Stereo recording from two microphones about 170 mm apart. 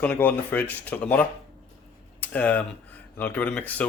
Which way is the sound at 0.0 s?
10° left (ahead or behind).